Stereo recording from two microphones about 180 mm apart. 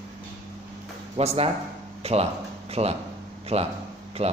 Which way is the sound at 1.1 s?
35° right (ahead or behind).